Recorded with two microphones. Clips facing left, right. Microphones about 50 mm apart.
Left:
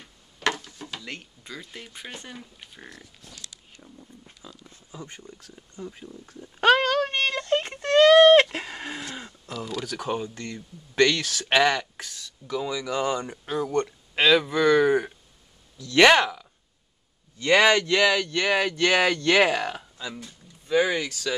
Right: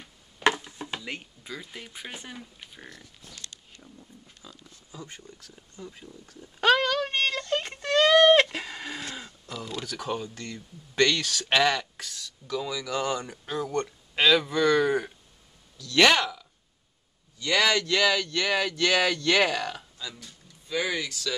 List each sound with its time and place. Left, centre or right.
0.4 s a sound: centre
1.0 s speech: centre
4.4 s speech: centre
5.8 s a sound: centre
9.1 s speech: centre
17.4 s speech: left